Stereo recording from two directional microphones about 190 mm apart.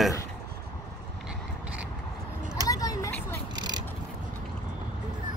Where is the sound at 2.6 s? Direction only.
20° left (ahead or behind).